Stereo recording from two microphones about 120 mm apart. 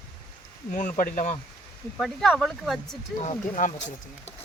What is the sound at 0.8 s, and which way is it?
Speech, 90° left.